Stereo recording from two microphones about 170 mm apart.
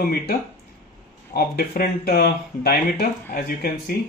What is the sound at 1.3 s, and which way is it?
Speech, 60° left (ahead or behind).